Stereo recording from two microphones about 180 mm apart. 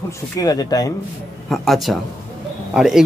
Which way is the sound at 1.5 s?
Centre (ahead or behind).